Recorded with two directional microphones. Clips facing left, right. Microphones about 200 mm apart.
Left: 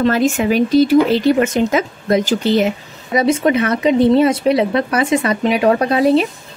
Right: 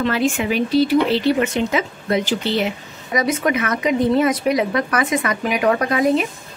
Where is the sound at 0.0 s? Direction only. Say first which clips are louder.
Left 5 dB; 40° left (ahead or behind).